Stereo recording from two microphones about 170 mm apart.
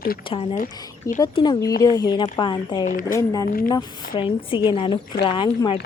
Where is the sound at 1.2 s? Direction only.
25° left (ahead or behind).